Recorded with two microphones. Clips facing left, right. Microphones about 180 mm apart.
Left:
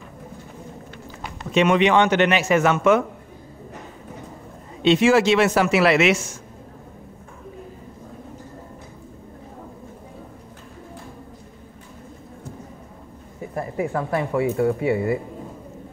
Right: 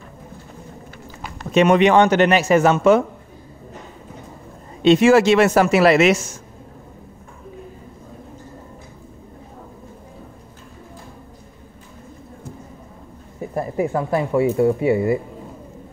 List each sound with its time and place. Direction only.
1.5 s speech: 45° right (ahead or behind)
4.8 s speech: 45° right (ahead or behind)
13.6 s speech: 25° right (ahead or behind)